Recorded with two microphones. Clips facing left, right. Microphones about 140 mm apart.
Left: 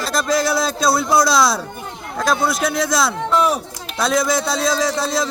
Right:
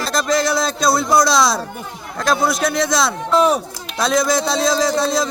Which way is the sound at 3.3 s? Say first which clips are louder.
Right 4 dB; 30° right (ahead or behind).